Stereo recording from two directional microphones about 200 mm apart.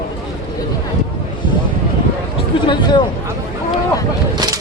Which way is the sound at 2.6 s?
25° left (ahead or behind).